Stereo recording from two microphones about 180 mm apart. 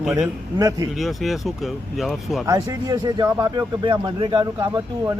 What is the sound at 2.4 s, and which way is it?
Speech, 20° right (ahead or behind).